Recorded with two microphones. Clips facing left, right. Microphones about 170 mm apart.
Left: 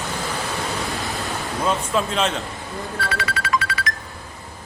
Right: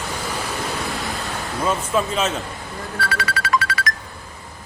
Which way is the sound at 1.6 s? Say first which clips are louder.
Right 1 dB; 5° right (ahead or behind).